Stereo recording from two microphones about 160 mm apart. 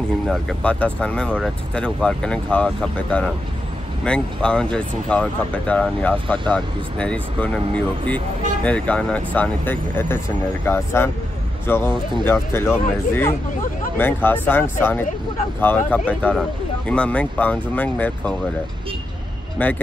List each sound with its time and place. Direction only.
0.3 s speech: 5° left (ahead or behind)
11.9 s speech: 30° right (ahead or behind)
12.3 s speech: 15° left (ahead or behind)
19.6 s speech: 10° left (ahead or behind)